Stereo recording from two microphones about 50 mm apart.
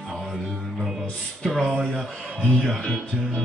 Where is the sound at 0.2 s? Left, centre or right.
Centre.